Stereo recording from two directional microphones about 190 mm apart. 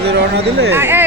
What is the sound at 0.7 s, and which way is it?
Speech, 10° right (ahead or behind).